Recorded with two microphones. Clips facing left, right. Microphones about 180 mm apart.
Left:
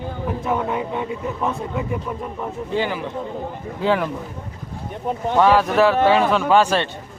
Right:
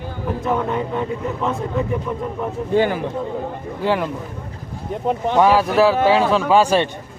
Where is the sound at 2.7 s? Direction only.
50° right (ahead or behind).